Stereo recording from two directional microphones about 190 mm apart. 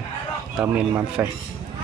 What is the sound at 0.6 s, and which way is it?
Speech, 10° right (ahead or behind).